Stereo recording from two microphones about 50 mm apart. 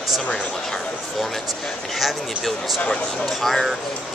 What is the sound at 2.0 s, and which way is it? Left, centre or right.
Speech, centre.